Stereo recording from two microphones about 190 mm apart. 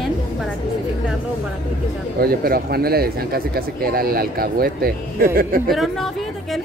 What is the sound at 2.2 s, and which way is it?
Speech, 50° right (ahead or behind).